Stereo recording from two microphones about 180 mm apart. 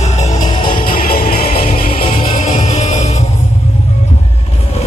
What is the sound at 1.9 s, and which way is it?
Music, 30° left (ahead or behind).